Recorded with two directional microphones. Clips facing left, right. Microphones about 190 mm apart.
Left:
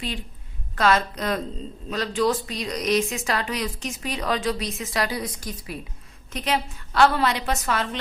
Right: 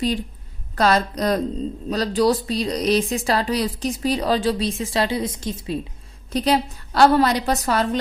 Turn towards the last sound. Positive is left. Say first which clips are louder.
# right 5 dB
turn(degrees=-40)  # may be behind; listen again after turning